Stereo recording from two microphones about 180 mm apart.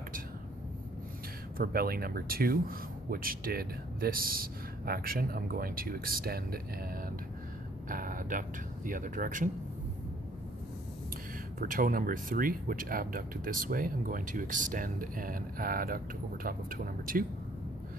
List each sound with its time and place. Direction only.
1.6 s speech: 55° right (ahead or behind)
11.6 s speech: 50° right (ahead or behind)